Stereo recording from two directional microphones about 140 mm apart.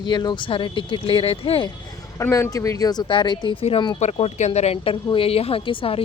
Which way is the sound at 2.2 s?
20° left (ahead or behind).